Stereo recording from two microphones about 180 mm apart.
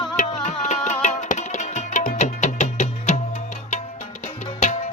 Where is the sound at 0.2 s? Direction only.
45° left (ahead or behind).